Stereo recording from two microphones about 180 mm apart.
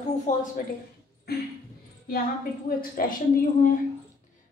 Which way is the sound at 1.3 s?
60° left (ahead or behind).